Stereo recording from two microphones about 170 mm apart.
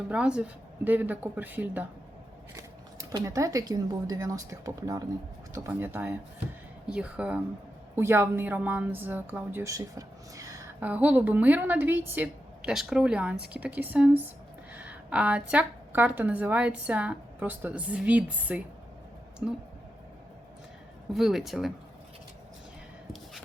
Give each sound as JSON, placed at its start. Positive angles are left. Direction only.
{"t": 0.1, "sound": "a woman's voice", "side_deg": -5}
{"t": 21.1, "sound": "speech", "side_deg": 0}